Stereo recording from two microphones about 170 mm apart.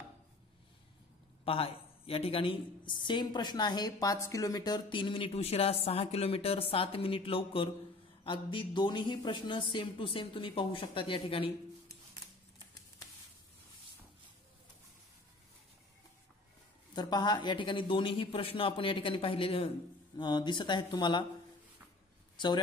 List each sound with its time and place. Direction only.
1.4 s a woman's voice: 35° left (ahead or behind)
16.9 s a woman's voice: 25° left (ahead or behind)